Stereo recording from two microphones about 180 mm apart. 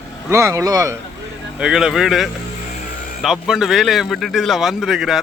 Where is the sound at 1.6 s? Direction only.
5° right (ahead or behind).